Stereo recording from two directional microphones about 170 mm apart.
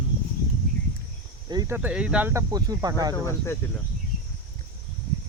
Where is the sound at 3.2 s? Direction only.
15° left (ahead or behind).